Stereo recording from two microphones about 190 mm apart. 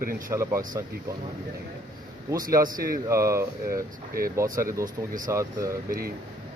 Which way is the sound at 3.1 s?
15° right (ahead or behind).